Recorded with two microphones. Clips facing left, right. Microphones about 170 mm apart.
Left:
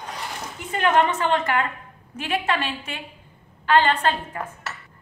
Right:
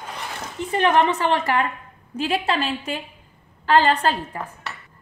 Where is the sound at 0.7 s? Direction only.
30° right (ahead or behind).